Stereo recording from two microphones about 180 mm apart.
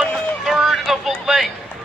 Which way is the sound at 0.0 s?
Centre (ahead or behind).